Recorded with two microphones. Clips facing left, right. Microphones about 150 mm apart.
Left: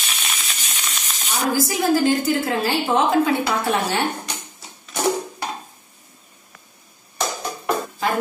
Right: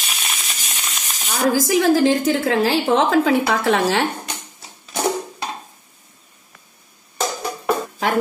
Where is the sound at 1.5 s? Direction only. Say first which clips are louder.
Right 3 dB; 90° right.